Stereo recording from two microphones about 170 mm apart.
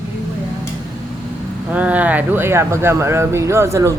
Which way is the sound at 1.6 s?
10° right (ahead or behind).